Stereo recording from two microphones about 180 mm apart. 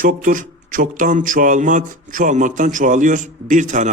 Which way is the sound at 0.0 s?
45° right (ahead or behind).